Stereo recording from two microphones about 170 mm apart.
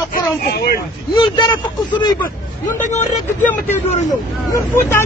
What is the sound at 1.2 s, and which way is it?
Speech, 25° left (ahead or behind).